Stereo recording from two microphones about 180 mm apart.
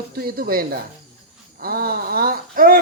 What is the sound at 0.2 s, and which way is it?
Speech, 55° right (ahead or behind).